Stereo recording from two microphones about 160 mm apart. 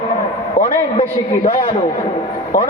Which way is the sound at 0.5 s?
55° left (ahead or behind).